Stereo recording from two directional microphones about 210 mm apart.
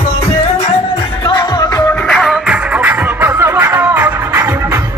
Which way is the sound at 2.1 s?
Centre (ahead or behind).